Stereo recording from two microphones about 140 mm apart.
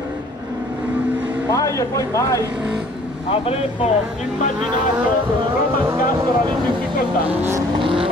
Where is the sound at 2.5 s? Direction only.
5° right (ahead or behind).